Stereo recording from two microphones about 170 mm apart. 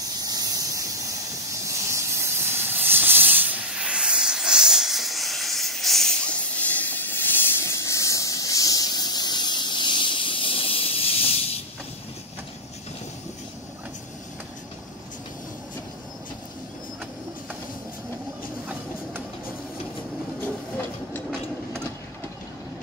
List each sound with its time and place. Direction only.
0.2 s steam: 20° right (ahead or behind); by 7.2 s 10° left (ahead or behind)
7.6 s a sound: 20° left (ahead or behind); by 11.6 s 35° left (ahead or behind)
20.3 s train: 10° left (ahead or behind)